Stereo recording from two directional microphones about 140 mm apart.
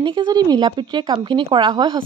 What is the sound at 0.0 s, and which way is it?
A woman's voice, 35° right (ahead or behind).